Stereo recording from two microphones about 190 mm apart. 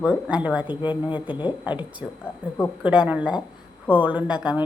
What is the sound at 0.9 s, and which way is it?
Speech, 25° left (ahead or behind).